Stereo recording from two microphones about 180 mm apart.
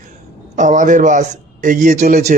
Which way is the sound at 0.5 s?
45° right (ahead or behind).